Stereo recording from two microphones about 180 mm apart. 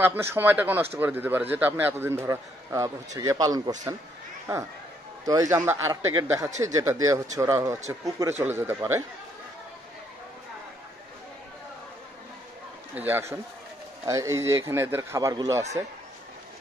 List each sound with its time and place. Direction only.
0.0 s speech: 10° right (ahead or behind)
5.2 s a man's voice: 20° right (ahead or behind)
12.9 s speech: 10° right (ahead or behind)